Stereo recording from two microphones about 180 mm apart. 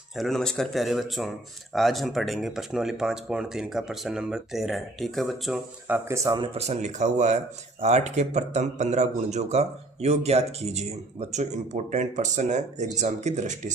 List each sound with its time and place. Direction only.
0.2 s speech: 5° left (ahead or behind)
6.1 s speech: 15° right (ahead or behind)
6.3 s speech: 30° right (ahead or behind)